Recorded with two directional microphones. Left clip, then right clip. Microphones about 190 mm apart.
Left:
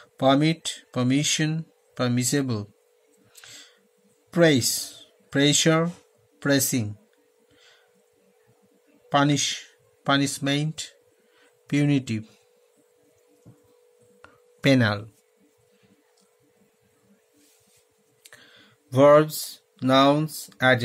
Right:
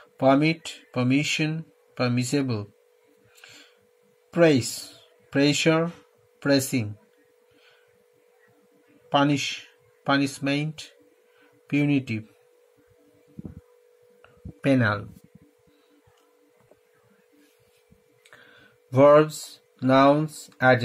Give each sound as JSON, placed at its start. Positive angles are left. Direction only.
{"t": 0.0, "sound": "speech", "side_deg": 40}
{"t": 4.3, "sound": "speech", "side_deg": 35}
{"t": 9.1, "sound": "speech", "side_deg": 40}
{"t": 14.2, "sound": "a sound", "side_deg": 35}
{"t": 18.2, "sound": "speech", "side_deg": 20}